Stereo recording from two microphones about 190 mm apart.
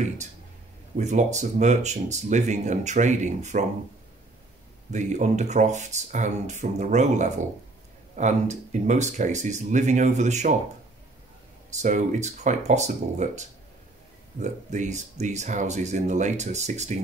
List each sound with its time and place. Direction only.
0.9 s speech: 40° right (ahead or behind)
4.9 s speech: 40° right (ahead or behind)
11.7 s speech: 40° right (ahead or behind)